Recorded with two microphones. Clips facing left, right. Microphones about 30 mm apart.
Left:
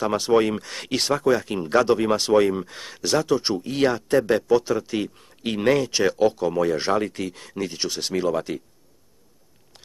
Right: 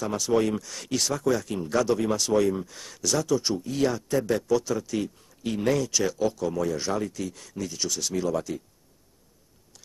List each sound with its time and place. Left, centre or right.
0.0 s speech: left